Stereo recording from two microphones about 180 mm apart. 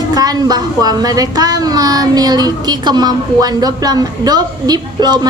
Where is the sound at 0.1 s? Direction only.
20° right (ahead or behind).